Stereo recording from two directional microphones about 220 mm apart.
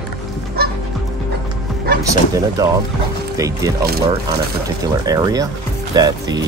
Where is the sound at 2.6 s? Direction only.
15° right (ahead or behind).